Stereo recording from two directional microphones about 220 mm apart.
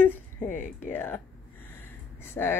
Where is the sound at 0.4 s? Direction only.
35° left (ahead or behind).